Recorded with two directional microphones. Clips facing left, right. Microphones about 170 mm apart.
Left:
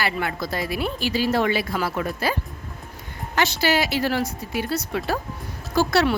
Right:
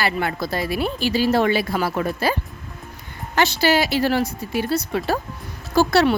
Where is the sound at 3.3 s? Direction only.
30° right (ahead or behind).